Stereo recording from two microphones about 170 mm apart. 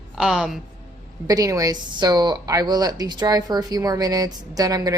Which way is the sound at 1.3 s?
20° right (ahead or behind).